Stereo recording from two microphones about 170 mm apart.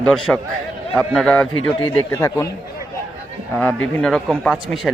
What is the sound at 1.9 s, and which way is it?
Speech, 15° left (ahead or behind).